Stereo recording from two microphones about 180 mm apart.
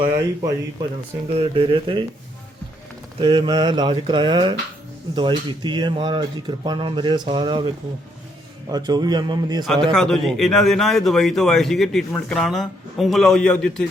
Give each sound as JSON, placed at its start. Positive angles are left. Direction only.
{"t": 0.0, "sound": "speech", "side_deg": -25}
{"t": 3.2, "sound": "speech", "side_deg": -25}
{"t": 8.7, "sound": "speech", "side_deg": -20}
{"t": 9.6, "sound": "speech", "side_deg": 5}